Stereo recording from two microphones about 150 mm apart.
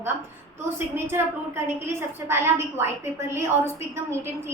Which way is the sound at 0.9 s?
15° right (ahead or behind).